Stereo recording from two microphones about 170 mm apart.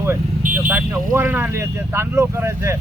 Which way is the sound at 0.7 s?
10° right (ahead or behind).